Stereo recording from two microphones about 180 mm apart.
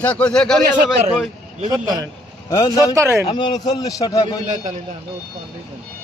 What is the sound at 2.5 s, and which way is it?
Speech, 20° left (ahead or behind).